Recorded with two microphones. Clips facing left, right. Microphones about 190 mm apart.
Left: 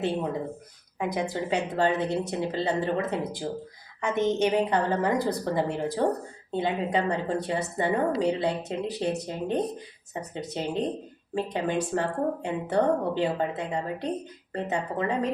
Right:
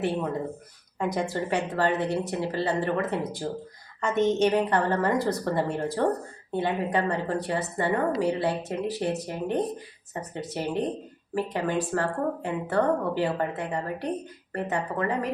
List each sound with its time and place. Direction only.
0.9 s speech: 15° left (ahead or behind)